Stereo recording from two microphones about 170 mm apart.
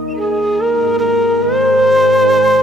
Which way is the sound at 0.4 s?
Centre (ahead or behind).